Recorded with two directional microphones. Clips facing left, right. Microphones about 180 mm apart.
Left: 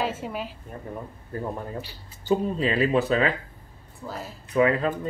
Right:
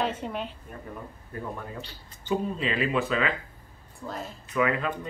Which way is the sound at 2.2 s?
35° left (ahead or behind).